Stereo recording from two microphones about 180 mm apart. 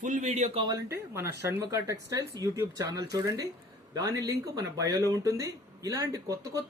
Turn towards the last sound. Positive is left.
turn(degrees=-20)  # may be behind; listen again after turning